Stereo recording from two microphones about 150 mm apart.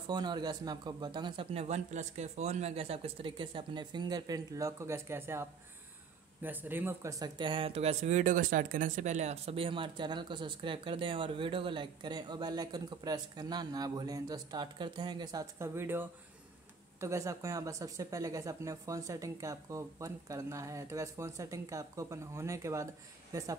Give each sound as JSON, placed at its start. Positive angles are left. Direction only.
{"t": 0.1, "sound": "speech", "side_deg": -30}
{"t": 15.6, "sound": "a woman's voice", "side_deg": -15}